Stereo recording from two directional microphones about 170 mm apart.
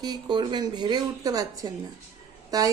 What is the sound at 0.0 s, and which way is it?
A woman's voice, 25° right (ahead or behind).